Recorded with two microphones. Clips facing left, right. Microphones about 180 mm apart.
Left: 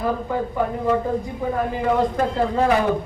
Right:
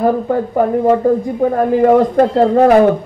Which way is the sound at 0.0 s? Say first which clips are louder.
Right 9 dB; 50° right (ahead or behind).